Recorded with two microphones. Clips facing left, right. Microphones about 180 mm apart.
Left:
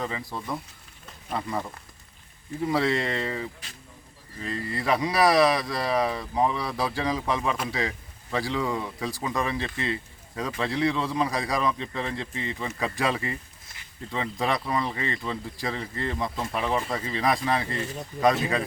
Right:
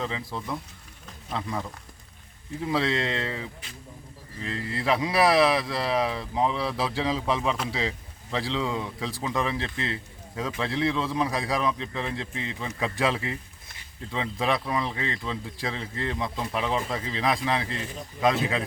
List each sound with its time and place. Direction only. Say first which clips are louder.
0.0 s speech: even; 5° left (ahead or behind)
4.6 s speech: even; centre (ahead or behind)
12.3 s speech: left 1 dB; 90° right
12.5 s speech: right 2 dB; centre (ahead or behind)